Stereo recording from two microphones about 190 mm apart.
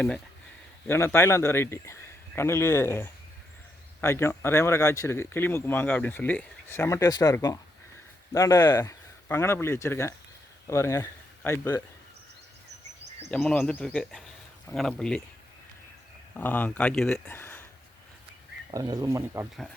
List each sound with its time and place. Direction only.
0.9 s speech: 15° left (ahead or behind)
13.3 s speech: 5° left (ahead or behind)
16.3 s speech: 10° left (ahead or behind)
17.3 s a sound: 10° left (ahead or behind)
18.7 s speech: 20° right (ahead or behind)